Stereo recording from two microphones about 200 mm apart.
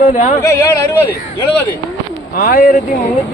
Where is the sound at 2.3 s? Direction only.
50° left (ahead or behind).